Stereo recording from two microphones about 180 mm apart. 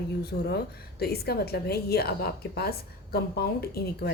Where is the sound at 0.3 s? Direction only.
65° left (ahead or behind).